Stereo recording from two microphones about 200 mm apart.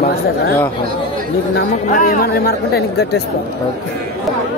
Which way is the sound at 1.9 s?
45° left (ahead or behind).